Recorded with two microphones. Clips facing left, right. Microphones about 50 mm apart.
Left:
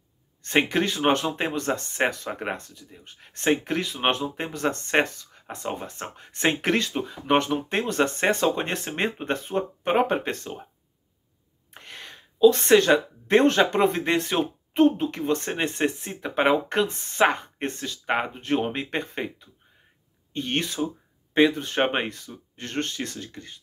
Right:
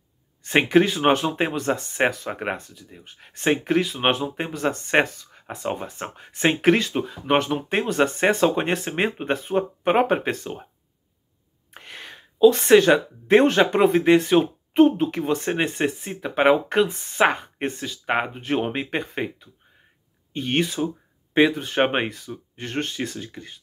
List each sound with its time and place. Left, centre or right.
0.4 s speech: centre
11.7 s a sound: centre
12.5 s speech: centre
14.7 s speech: right